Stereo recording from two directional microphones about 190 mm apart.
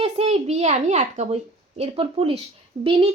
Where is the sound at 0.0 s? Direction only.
30° right (ahead or behind).